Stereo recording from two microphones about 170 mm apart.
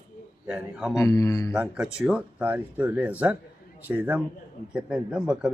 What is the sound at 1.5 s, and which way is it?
A man's voice, 5° right (ahead or behind).